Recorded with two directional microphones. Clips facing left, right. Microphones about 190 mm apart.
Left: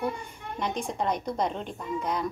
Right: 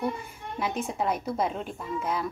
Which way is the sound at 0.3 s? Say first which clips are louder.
Even; 5° right (ahead or behind).